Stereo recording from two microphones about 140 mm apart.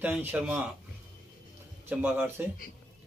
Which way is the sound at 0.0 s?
15° right (ahead or behind).